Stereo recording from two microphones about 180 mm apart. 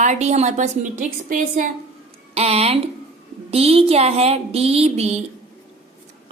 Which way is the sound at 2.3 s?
35° right (ahead or behind).